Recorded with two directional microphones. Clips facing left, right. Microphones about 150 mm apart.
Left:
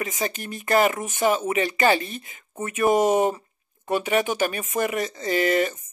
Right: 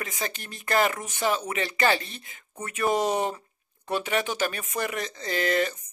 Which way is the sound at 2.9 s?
45° left (ahead or behind).